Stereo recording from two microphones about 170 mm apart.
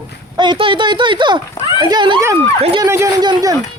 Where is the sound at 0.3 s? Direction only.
30° right (ahead or behind).